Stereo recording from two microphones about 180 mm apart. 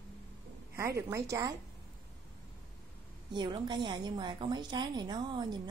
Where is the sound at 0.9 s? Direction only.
15° right (ahead or behind).